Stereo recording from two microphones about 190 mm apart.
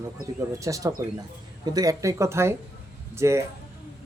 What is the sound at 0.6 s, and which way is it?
Speech, 15° right (ahead or behind).